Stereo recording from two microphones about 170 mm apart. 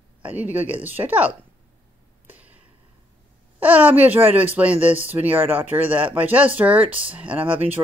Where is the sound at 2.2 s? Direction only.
10° right (ahead or behind).